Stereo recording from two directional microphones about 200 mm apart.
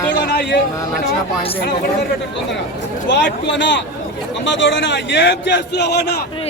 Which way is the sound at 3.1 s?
60° left (ahead or behind).